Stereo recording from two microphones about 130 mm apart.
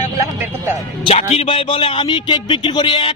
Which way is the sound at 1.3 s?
50° left (ahead or behind).